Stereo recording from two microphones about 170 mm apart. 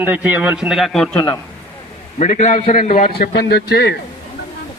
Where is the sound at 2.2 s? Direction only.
45° left (ahead or behind).